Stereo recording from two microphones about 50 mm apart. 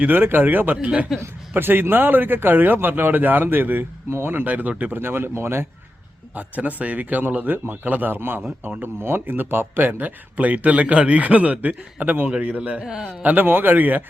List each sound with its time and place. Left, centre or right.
0.0 s speech: right
0.8 s speech: right
1.5 s a man's voice: right
4.9 s a man's voice: right
6.3 s speech: right; by 13.1 s centre
13.2 s speech: right